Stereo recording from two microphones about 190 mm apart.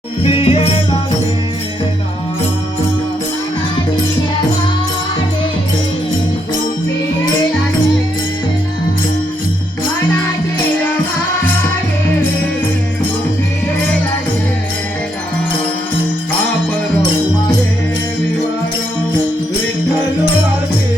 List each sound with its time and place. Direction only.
0.2 s music: 30° left (ahead or behind)